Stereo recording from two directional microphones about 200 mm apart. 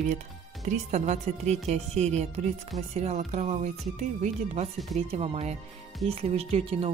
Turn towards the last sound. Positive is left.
turn(degrees=-30)  # may be behind; listen again after turning